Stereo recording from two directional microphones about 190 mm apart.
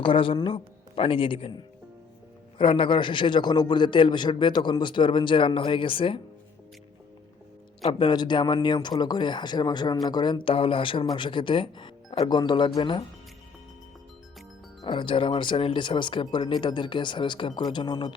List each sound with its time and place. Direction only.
0.0 s speech: 25° left (ahead or behind)
7.8 s speech: 25° left (ahead or behind)
14.8 s speech: 25° left (ahead or behind)